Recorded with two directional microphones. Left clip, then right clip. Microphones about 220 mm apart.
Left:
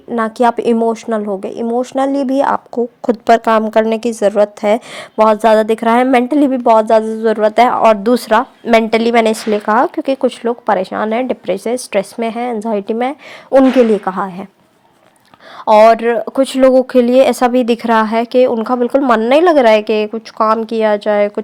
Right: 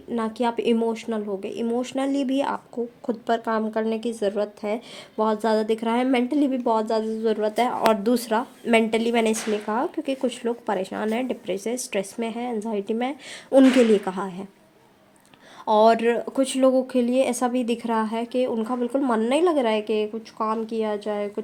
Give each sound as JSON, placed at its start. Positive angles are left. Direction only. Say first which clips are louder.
{"t": 0.1, "sound": "speech", "louder": "left 12 dB", "side_deg": 30}
{"t": 15.6, "sound": "speech", "louder": "left 10 dB", "side_deg": 25}